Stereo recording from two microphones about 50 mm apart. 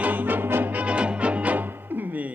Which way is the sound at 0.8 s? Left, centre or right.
Right.